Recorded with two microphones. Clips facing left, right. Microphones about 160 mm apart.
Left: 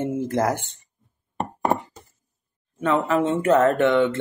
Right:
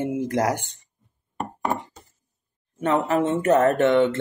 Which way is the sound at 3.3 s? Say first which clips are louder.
Even; 20° right (ahead or behind).